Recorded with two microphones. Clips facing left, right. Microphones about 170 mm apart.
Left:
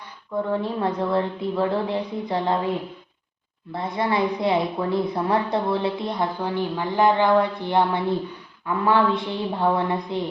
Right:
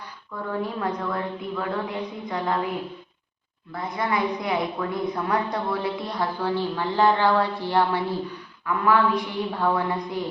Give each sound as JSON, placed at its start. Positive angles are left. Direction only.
{"t": 0.6, "sound": "speech", "side_deg": 30}